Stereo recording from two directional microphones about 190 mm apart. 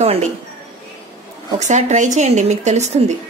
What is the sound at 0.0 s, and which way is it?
Speech, 35° right (ahead or behind).